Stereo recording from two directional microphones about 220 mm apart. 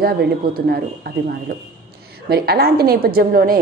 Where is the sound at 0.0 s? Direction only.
45° right (ahead or behind).